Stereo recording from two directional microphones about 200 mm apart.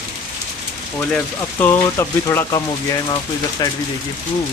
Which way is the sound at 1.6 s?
15° left (ahead or behind).